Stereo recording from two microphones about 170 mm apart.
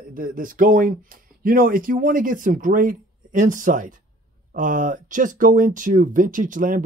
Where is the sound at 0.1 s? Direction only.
55° right (ahead or behind).